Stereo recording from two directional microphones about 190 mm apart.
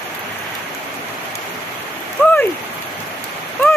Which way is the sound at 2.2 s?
10° left (ahead or behind).